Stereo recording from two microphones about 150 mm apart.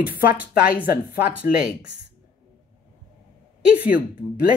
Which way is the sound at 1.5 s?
70° left (ahead or behind).